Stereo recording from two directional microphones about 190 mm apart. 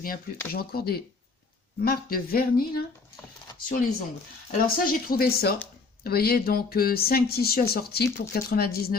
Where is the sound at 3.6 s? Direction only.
50° left (ahead or behind).